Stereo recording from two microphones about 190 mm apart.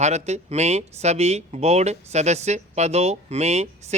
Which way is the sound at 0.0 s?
35° right (ahead or behind).